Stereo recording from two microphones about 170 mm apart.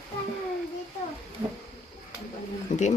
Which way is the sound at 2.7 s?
50° left (ahead or behind).